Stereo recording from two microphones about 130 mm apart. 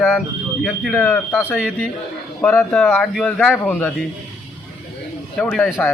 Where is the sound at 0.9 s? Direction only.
15° left (ahead or behind).